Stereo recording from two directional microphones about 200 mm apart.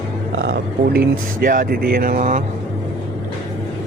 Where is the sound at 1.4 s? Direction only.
45° right (ahead or behind).